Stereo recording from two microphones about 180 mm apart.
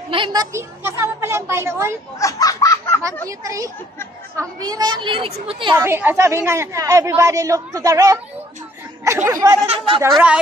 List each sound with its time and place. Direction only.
0.1 s speech: 25° right (ahead or behind)
2.1 s a sound: 20° left (ahead or behind)
3.3 s a woman's voice: 20° right (ahead or behind)
5.8 s speech: 10° right (ahead or behind)
9.7 s speech: 30° right (ahead or behind)
10.1 s speech: 5° right (ahead or behind)